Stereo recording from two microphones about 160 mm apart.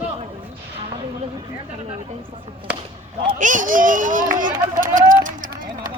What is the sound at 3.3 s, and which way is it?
Speech, 55° right (ahead or behind).